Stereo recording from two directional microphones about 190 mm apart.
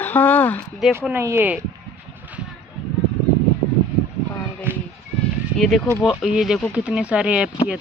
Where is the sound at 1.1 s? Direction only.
10° right (ahead or behind).